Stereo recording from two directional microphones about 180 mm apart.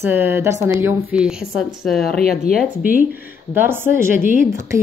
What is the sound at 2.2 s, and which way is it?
Speech, 55° left (ahead or behind).